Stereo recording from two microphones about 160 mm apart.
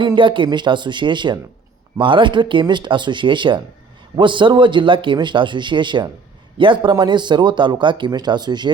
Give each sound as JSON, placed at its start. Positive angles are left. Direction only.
{"t": 0.2, "sound": "a man's voice", "side_deg": -30}